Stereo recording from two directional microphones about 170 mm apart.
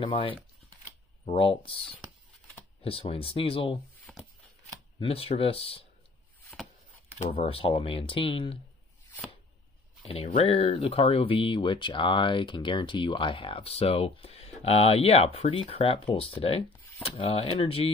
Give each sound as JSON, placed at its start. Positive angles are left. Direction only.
{"t": 0.0, "sound": "speech", "side_deg": 30}
{"t": 4.1, "sound": "shuffling cards", "side_deg": 10}
{"t": 4.9, "sound": "speech", "side_deg": 35}
{"t": 7.2, "sound": "speech", "side_deg": 35}
{"t": 10.0, "sound": "speech", "side_deg": 40}